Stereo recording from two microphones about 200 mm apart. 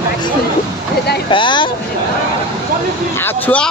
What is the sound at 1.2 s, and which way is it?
Speech, 25° left (ahead or behind).